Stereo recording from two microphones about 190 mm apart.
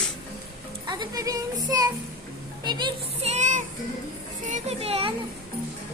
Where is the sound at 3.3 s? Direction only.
40° right (ahead or behind).